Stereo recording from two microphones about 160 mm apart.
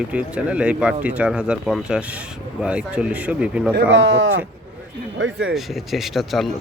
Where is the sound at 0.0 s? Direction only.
5° right (ahead or behind).